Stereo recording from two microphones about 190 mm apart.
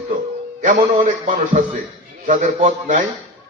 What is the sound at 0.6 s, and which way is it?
A man's voice, 45° right (ahead or behind).